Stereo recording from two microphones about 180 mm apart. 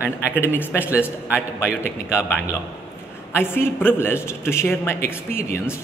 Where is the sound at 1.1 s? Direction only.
10° left (ahead or behind).